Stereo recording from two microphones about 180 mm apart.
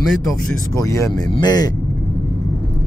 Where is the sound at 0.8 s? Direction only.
15° left (ahead or behind).